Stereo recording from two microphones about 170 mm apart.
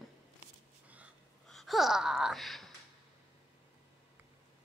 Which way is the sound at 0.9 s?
10° right (ahead or behind).